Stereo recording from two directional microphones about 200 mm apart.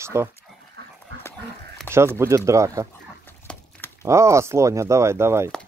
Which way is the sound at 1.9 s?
15° right (ahead or behind).